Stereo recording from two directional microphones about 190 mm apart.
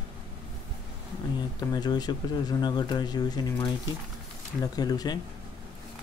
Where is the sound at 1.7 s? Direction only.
20° left (ahead or behind).